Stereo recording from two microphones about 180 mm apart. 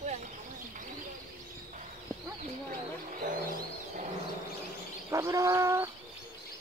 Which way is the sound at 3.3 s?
50° right (ahead or behind).